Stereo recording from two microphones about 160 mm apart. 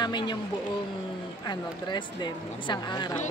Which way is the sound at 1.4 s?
25° left (ahead or behind).